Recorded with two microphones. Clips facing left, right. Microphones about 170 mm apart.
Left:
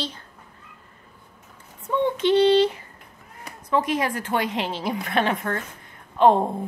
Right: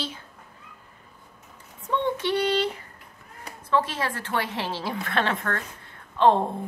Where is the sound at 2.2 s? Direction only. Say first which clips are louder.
Left 7 dB; 20° left (ahead or behind).